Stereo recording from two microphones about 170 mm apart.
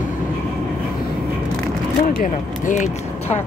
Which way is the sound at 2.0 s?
55° left (ahead or behind).